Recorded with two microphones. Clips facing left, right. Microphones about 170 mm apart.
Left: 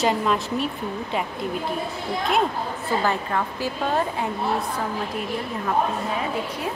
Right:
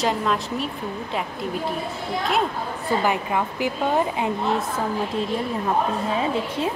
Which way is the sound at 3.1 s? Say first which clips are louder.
Right 1 dB; 15° right (ahead or behind).